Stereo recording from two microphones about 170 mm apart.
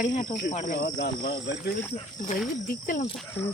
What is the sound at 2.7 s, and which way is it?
Speech, 55° left (ahead or behind).